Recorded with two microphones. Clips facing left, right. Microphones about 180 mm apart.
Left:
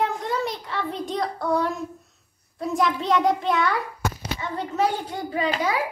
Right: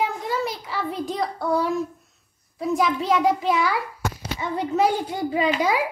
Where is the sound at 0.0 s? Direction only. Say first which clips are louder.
Even; centre (ahead or behind).